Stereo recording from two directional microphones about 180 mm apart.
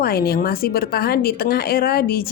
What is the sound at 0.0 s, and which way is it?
Speech, 60° left (ahead or behind).